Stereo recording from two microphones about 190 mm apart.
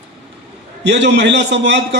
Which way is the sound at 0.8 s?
65° right (ahead or behind).